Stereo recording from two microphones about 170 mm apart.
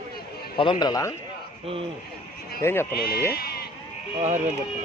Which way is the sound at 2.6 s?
15° left (ahead or behind).